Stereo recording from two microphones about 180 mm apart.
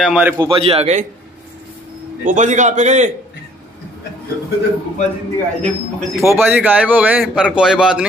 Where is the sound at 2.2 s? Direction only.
45° right (ahead or behind).